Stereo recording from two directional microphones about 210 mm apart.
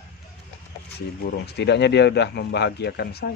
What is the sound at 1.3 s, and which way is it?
Speech, 55° left (ahead or behind).